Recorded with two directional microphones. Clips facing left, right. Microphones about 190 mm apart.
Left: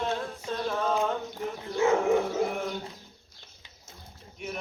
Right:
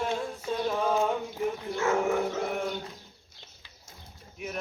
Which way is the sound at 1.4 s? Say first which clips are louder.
Right 7 dB; 10° right (ahead or behind).